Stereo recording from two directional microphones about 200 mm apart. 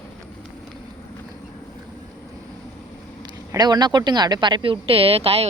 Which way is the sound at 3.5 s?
20° right (ahead or behind).